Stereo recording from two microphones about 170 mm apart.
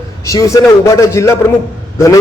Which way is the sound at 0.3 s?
20° left (ahead or behind).